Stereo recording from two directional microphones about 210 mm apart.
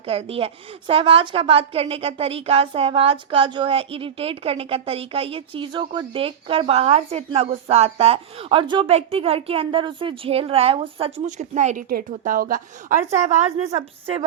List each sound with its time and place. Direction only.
0.0 s a woman's voice: 30° right (ahead or behind)